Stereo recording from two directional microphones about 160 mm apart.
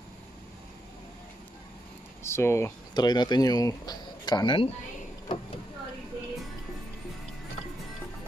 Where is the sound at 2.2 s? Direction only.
15° left (ahead or behind).